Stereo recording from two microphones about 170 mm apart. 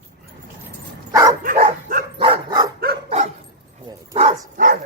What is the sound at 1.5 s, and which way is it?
Dog, 55° right (ahead or behind).